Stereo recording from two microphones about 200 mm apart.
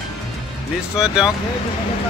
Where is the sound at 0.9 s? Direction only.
5° right (ahead or behind).